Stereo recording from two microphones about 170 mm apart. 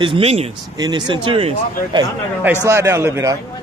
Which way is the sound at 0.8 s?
25° right (ahead or behind).